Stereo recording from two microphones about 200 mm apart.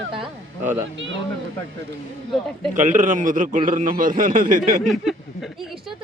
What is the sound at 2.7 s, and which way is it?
A man's voice, 40° right (ahead or behind).